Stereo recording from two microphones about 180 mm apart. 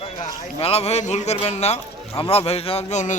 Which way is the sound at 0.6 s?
35° left (ahead or behind).